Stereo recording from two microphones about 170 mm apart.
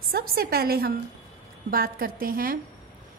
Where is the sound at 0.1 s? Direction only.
65° right (ahead or behind).